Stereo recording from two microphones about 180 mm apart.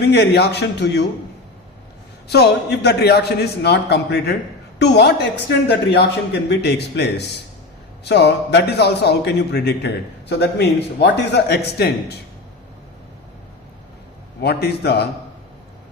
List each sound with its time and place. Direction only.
0.0 s a man's voice: 70° left (ahead or behind)
2.3 s a man's voice: 65° left (ahead or behind)
14.4 s a man's voice: 65° left (ahead or behind)